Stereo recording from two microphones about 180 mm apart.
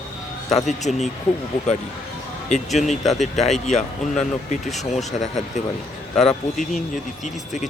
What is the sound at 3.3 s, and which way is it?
Speech, 40° left (ahead or behind).